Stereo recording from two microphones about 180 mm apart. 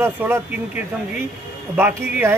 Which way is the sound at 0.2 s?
10° right (ahead or behind).